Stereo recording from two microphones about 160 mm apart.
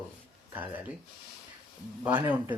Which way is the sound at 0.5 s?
10° right (ahead or behind).